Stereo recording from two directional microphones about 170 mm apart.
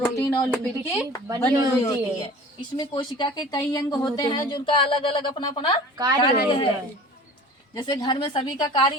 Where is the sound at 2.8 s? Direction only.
25° left (ahead or behind).